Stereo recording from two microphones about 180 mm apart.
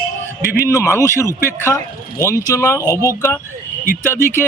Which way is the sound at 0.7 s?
15° left (ahead or behind).